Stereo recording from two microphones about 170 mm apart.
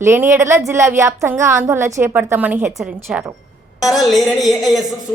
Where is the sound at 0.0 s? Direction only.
15° right (ahead or behind).